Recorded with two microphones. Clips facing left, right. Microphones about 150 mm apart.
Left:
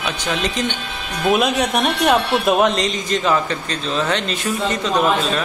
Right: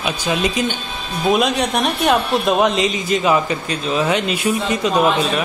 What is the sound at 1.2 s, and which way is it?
Speech, centre (ahead or behind).